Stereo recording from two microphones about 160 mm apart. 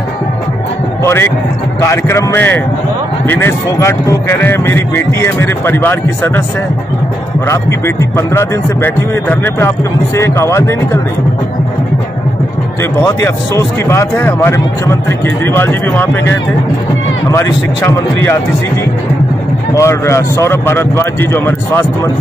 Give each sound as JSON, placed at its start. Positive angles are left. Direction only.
{"t": 1.0, "sound": "a man's voice", "side_deg": 15}
{"t": 7.4, "sound": "speech", "side_deg": 15}
{"t": 13.0, "sound": "speech", "side_deg": 15}
{"t": 19.7, "sound": "speech", "side_deg": 20}